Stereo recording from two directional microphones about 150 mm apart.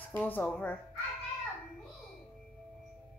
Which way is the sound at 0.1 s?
10° left (ahead or behind).